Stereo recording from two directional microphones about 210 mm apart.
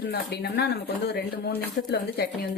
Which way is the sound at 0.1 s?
50° left (ahead or behind).